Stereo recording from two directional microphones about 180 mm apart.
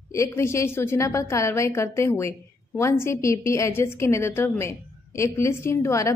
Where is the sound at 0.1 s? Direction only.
15° left (ahead or behind).